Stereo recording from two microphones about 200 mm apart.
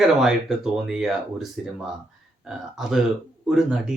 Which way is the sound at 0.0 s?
Centre (ahead or behind).